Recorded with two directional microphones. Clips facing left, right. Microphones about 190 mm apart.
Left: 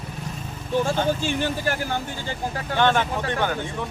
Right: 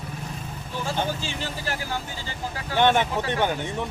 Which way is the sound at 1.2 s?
55° left (ahead or behind).